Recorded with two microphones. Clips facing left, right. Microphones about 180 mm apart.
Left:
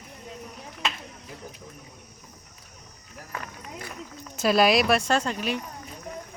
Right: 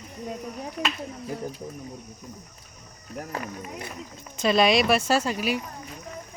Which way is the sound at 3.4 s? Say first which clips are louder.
Right 4 dB; 20° right (ahead or behind).